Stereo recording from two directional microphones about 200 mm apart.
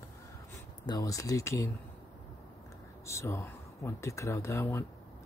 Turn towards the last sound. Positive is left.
turn(degrees=15)  # may be behind; listen again after turning